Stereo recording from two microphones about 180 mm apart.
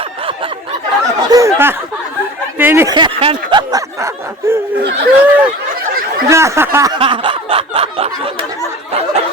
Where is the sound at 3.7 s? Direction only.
20° right (ahead or behind).